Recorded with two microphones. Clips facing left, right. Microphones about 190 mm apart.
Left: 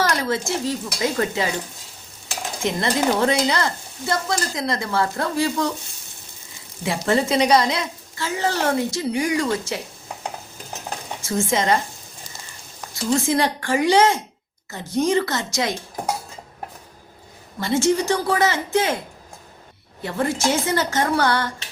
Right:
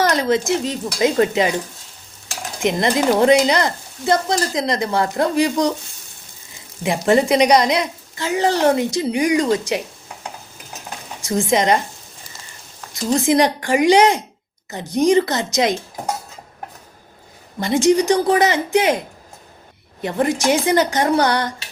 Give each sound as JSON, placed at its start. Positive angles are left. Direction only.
{"t": 0.0, "sound": "speech", "side_deg": -20}
{"t": 2.6, "sound": "speech", "side_deg": -15}
{"t": 6.8, "sound": "a woman's voice", "side_deg": -20}
{"t": 11.2, "sound": "a woman's voice", "side_deg": -15}
{"t": 12.9, "sound": "a woman's voice", "side_deg": -20}
{"t": 17.6, "sound": "a woman's voice", "side_deg": -15}